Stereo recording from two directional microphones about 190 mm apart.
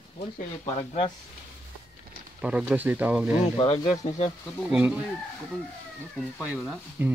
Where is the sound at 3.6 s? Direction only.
30° left (ahead or behind).